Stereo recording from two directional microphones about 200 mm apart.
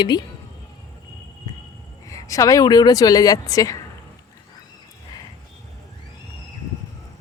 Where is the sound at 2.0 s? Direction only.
15° left (ahead or behind).